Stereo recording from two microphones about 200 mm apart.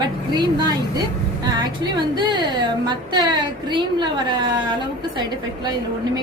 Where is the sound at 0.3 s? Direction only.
20° right (ahead or behind).